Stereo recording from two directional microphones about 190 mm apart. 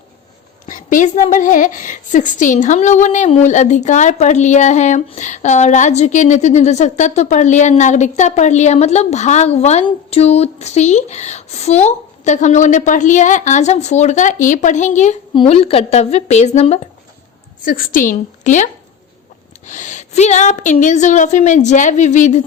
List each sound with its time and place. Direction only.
0.7 s a woman's voice: 45° left (ahead or behind)
17.7 s a woman's voice: 50° left (ahead or behind)